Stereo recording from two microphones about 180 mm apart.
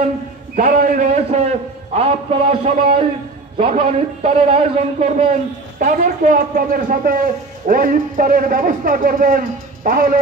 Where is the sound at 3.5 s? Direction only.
35° right (ahead or behind).